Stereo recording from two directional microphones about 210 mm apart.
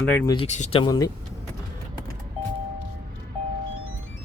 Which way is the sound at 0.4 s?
35° left (ahead or behind).